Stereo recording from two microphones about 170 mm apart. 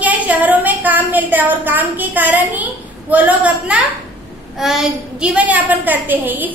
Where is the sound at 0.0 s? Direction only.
10° right (ahead or behind).